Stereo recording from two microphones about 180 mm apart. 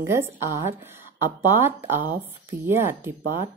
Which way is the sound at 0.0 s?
15° right (ahead or behind).